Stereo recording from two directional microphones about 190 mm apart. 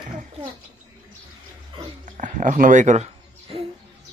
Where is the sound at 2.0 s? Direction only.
40° right (ahead or behind).